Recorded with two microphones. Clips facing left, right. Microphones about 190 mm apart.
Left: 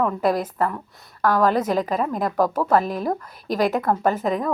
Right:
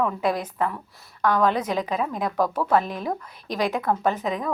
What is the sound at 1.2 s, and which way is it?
A woman's voice, centre (ahead or behind).